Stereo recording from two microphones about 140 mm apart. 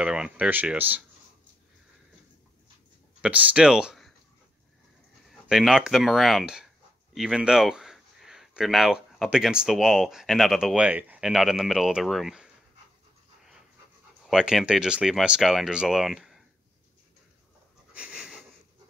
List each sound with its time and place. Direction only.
0.0 s speech: 5° right (ahead or behind)
3.2 s speech: 10° right (ahead or behind)
5.3 s speech: 5° right (ahead or behind)
14.2 s speech: 5° right (ahead or behind)
17.9 s sniff: 5° right (ahead or behind)